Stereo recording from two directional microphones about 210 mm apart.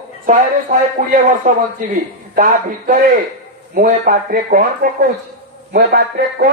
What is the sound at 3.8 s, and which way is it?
Speech, 45° right (ahead or behind).